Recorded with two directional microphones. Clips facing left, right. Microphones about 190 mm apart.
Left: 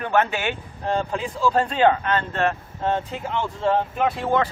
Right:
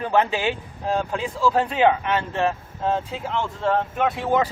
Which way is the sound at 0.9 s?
5° right (ahead or behind).